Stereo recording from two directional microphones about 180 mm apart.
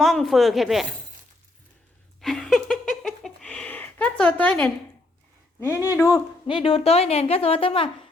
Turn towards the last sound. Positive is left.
turn(degrees=30)  # may be behind; listen again after turning